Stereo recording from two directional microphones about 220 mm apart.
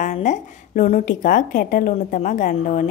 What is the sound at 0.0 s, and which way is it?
A woman's voice, 35° left (ahead or behind).